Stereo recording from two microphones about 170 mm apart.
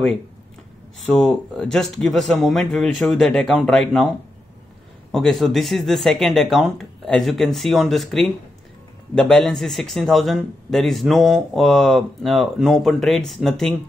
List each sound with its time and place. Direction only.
1.1 s speech: 5° left (ahead or behind)
5.1 s speech: centre (ahead or behind)